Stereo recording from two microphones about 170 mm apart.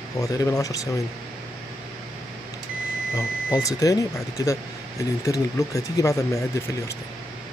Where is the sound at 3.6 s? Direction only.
20° left (ahead or behind).